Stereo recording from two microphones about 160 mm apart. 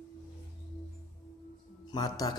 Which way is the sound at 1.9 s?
25° left (ahead or behind).